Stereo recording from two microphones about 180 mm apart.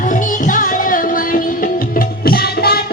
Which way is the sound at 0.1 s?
45° left (ahead or behind).